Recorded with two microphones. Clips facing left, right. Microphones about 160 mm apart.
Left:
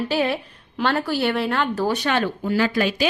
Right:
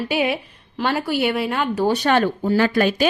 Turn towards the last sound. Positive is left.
turn(degrees=-50)  # may be behind; listen again after turning